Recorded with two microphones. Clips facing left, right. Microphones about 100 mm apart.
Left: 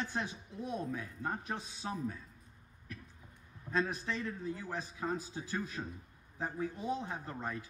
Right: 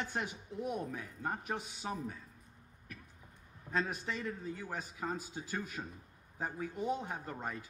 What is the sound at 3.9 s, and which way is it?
A man's voice, 15° right (ahead or behind).